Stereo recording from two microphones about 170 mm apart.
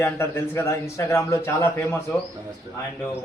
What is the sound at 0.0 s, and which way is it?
A man's voice, 15° left (ahead or behind).